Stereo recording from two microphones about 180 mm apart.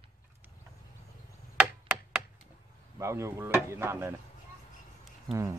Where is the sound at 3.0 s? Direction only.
15° right (ahead or behind).